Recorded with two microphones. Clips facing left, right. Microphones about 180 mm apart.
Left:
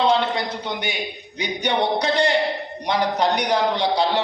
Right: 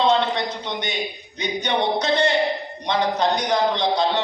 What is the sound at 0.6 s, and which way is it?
A man's voice, 10° left (ahead or behind).